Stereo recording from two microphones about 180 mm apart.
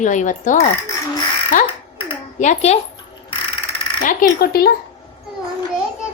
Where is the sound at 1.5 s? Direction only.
45° left (ahead or behind).